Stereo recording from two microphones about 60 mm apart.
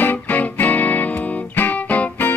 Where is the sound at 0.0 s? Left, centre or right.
Left.